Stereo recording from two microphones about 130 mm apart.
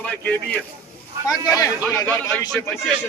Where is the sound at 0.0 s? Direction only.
5° left (ahead or behind).